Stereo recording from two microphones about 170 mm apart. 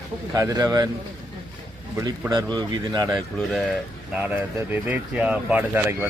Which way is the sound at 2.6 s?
25° right (ahead or behind).